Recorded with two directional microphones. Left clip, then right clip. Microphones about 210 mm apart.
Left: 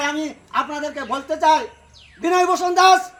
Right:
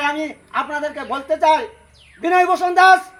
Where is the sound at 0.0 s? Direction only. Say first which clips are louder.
Right 2 dB; 60° left (ahead or behind).